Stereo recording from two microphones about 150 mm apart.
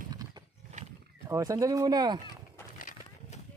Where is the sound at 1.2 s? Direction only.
20° right (ahead or behind).